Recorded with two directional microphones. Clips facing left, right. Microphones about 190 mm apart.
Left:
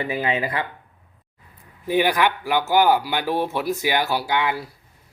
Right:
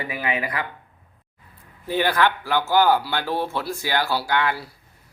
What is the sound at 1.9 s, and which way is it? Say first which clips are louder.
Speech: left 1 dB; 15° left (ahead or behind).